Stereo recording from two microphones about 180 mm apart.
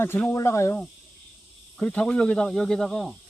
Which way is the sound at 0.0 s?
15° left (ahead or behind).